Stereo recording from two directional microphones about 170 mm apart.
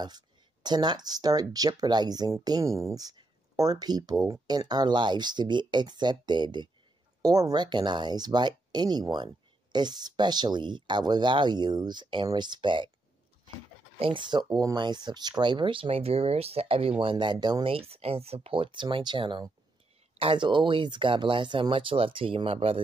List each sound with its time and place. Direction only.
0.0 s speech: 25° right (ahead or behind)
13.9 s speech: 30° right (ahead or behind)